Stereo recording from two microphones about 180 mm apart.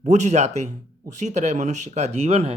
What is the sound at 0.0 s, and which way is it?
Speech, 40° right (ahead or behind).